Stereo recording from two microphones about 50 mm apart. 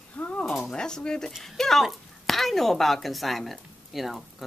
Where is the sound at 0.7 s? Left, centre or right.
Centre.